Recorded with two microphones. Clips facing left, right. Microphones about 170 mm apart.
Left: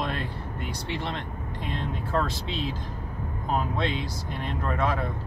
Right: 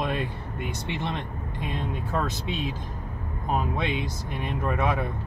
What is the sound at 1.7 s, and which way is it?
Speech, 15° right (ahead or behind).